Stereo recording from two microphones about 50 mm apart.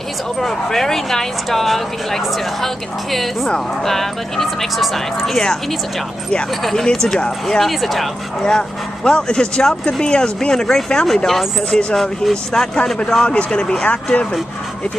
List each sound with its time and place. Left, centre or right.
0.4 s speech: centre
6.6 s speech: centre
8.4 s speech: centre